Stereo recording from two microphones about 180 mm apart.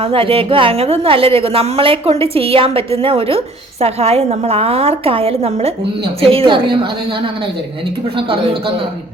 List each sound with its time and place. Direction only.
0.0 s a woman's voice: 30° right (ahead or behind)